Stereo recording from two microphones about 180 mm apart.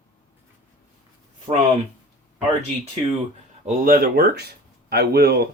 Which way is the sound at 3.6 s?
50° right (ahead or behind).